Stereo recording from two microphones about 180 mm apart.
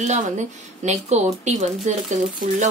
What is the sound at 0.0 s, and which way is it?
Speech, 40° right (ahead or behind).